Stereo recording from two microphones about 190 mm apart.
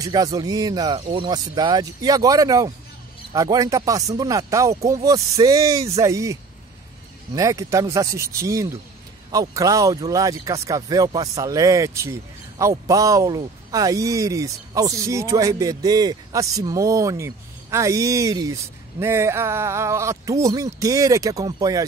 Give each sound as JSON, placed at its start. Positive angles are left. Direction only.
{"t": 0.0, "sound": "speech", "side_deg": -20}
{"t": 7.3, "sound": "speech", "side_deg": -15}